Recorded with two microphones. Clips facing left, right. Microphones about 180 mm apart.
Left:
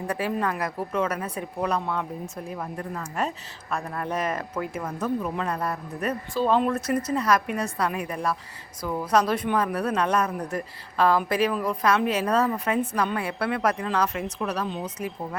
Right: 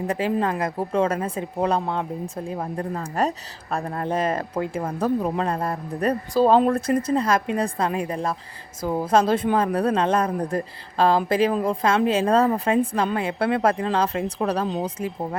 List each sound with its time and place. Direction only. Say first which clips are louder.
0.1 s a woman's voice: right 3 dB; 25° right (ahead or behind)